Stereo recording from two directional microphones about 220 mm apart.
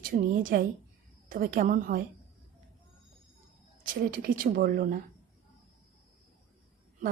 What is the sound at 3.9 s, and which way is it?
A woman's voice, 40° right (ahead or behind).